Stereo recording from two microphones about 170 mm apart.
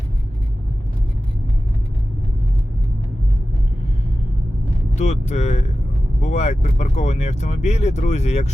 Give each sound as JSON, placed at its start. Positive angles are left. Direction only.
{"t": 4.9, "sound": "speech", "side_deg": 40}